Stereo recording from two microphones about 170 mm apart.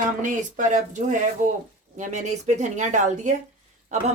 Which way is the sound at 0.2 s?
50° right (ahead or behind).